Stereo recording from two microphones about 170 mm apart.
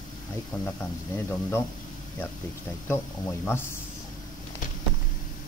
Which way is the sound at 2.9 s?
15° left (ahead or behind).